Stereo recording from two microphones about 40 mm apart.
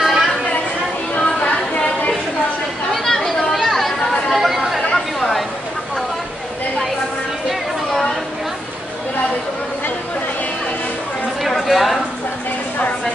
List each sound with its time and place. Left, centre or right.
0.0 s chatter: centre
1.1 s chatter: left
2.9 s chatter: centre
7.4 s chatter: centre
11.4 s a sound: centre